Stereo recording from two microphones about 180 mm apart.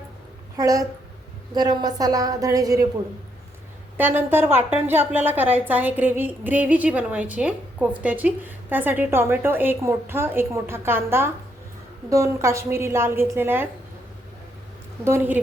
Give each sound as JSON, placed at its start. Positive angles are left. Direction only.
{"t": 0.5, "sound": "a woman's voice", "side_deg": -20}
{"t": 3.9, "sound": "a woman's voice", "side_deg": -10}
{"t": 15.0, "sound": "a woman's voice", "side_deg": -15}